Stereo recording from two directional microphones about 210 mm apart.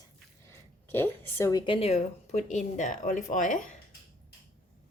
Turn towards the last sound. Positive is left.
turn(degrees=35)  # may be behind; listen again after turning